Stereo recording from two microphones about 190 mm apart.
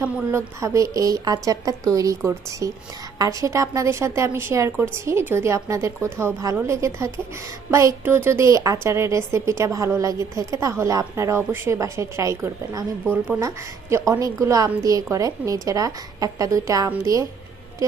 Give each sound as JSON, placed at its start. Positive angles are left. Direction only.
{"t": 0.0, "sound": "a woman's voice", "side_deg": -10}